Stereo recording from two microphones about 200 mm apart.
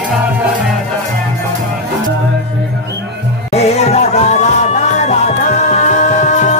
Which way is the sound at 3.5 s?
30° left (ahead or behind).